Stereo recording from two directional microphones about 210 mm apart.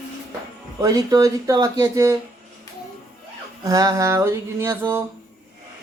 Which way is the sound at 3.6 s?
15° right (ahead or behind).